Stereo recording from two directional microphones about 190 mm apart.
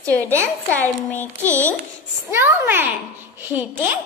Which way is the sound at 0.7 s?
10° left (ahead or behind).